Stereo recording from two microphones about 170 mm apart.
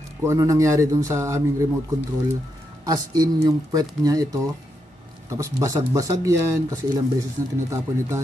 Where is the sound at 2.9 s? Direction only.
20° right (ahead or behind).